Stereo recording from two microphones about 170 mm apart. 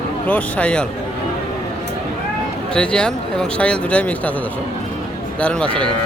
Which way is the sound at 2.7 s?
5° left (ahead or behind).